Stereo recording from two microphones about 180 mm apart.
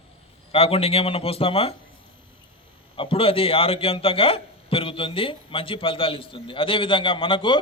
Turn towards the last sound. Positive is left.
turn(degrees=30)  # may be behind; listen again after turning